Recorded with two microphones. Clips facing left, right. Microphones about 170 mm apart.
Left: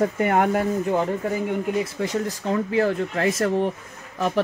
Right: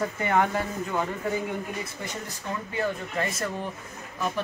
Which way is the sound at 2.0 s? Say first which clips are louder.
Left 11 dB; 90° left.